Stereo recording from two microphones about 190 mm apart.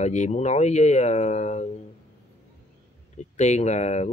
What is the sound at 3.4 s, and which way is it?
Speech, 35° left (ahead or behind).